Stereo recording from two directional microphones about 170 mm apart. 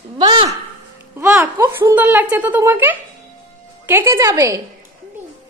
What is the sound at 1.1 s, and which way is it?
A child's voice, 15° right (ahead or behind).